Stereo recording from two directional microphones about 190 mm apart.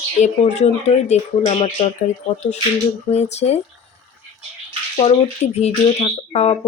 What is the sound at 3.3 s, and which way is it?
Speech, 35° left (ahead or behind).